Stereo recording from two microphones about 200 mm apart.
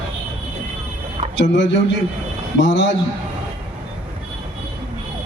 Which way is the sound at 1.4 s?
65° left (ahead or behind).